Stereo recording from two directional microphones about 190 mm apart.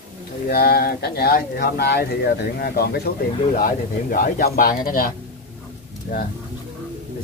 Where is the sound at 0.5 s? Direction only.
55° left (ahead or behind).